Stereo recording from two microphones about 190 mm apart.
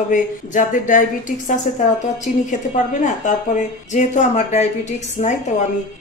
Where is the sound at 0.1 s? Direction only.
40° left (ahead or behind).